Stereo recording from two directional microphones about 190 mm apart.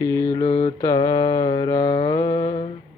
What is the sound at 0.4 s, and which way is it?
Mantra, 30° left (ahead or behind).